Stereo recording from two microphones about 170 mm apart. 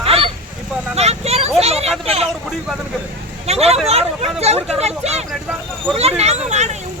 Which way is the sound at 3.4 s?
40° right (ahead or behind).